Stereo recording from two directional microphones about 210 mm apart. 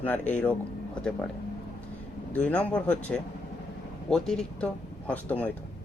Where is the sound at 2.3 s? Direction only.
5° left (ahead or behind).